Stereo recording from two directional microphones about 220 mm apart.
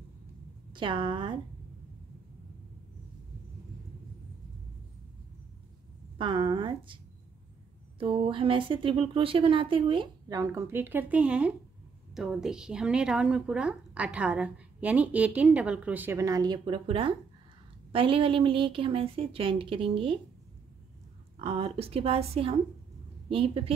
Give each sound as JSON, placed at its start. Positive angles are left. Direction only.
{"t": 0.7, "sound": "speech", "side_deg": -20}
{"t": 6.1, "sound": "speech", "side_deg": -25}
{"t": 8.0, "sound": "a woman's voice", "side_deg": -25}
{"t": 21.4, "sound": "speech", "side_deg": -25}